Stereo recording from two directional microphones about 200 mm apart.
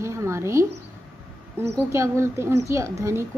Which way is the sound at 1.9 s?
15° right (ahead or behind).